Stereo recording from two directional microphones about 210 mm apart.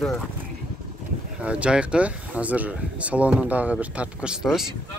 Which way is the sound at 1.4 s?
5° right (ahead or behind).